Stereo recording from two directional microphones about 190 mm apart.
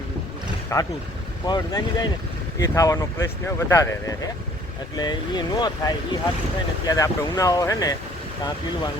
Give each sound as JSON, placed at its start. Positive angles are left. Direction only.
{"t": 0.7, "sound": "speech", "side_deg": 15}